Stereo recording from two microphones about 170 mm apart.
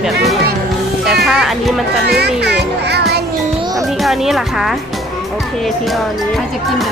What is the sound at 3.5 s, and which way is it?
Music, 25° right (ahead or behind).